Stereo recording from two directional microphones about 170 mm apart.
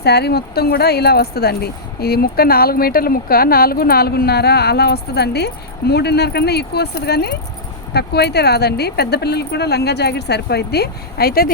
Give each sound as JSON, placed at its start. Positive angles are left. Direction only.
{"t": 0.0, "sound": "speech", "side_deg": 70}